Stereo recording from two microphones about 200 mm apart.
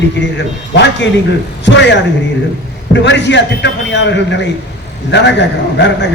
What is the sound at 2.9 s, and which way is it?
A man's voice, 60° left (ahead or behind).